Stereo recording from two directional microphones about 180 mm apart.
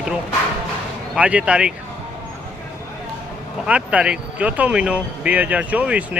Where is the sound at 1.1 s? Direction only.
5° right (ahead or behind).